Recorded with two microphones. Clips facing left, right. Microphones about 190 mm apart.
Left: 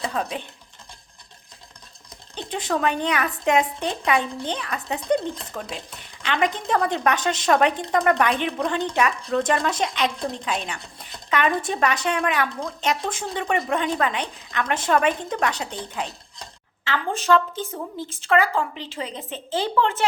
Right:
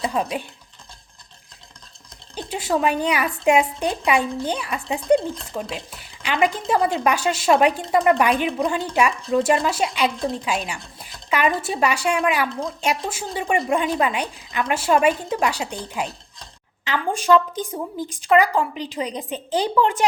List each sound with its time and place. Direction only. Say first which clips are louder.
0.0 s speech: right 3 dB; 10° right (ahead or behind)
2.3 s a woman's voice: right 3 dB; 10° right (ahead or behind)